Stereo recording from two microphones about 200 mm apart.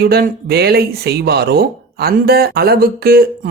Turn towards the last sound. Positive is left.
turn(degrees=-50)  # may be behind; listen again after turning